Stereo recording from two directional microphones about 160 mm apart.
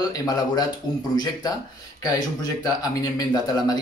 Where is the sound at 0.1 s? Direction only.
25° left (ahead or behind).